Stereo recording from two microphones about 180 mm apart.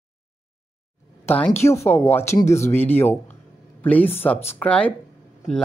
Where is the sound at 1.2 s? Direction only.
10° left (ahead or behind).